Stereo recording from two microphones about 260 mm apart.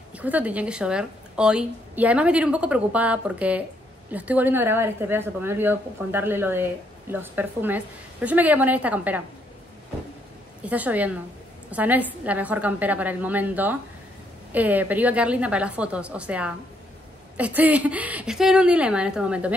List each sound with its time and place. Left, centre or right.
0.1 s a woman's voice: centre
10.6 s a woman's voice: centre